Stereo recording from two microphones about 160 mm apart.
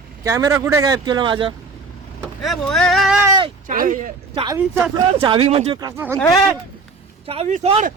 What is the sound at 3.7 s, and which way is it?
Speech, 55° right (ahead or behind).